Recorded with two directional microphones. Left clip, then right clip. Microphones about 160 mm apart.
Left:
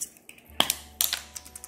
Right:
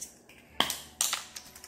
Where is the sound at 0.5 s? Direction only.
50° left (ahead or behind).